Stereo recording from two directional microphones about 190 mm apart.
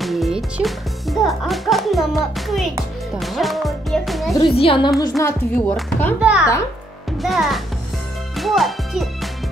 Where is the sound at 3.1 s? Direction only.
Centre (ahead or behind).